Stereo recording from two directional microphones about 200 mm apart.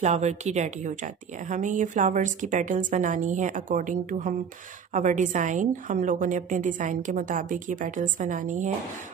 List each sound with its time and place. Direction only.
0.0 s speech: 35° right (ahead or behind)